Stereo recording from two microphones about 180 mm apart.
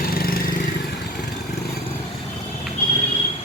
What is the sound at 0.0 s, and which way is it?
Vehicle, 55° left (ahead or behind).